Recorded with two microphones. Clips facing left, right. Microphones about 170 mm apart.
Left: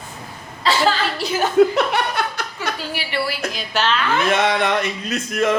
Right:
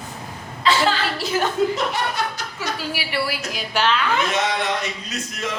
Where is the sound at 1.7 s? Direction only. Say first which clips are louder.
Left 4 dB; 65° left (ahead or behind).